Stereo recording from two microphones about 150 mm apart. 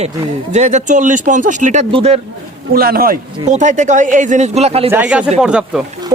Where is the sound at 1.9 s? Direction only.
40° right (ahead or behind).